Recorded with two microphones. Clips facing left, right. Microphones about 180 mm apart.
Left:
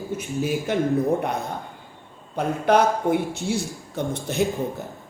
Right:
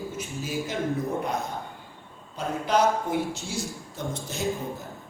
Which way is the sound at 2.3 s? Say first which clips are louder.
Left 6 dB; 60° left (ahead or behind).